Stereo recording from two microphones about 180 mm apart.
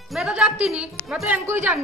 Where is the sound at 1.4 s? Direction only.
15° right (ahead or behind).